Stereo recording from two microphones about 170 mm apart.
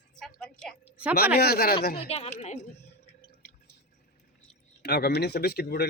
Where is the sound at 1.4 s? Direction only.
65° left (ahead or behind).